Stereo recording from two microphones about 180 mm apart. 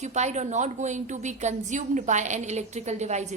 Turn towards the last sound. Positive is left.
turn(degrees=-40)  # may be behind; listen again after turning